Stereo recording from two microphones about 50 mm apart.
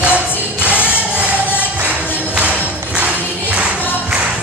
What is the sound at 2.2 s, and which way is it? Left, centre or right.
Music, right.